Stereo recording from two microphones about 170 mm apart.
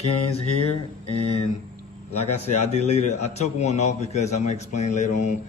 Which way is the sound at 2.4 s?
40° left (ahead or behind).